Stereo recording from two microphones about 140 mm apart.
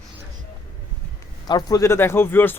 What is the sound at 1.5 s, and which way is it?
Speech, 30° left (ahead or behind).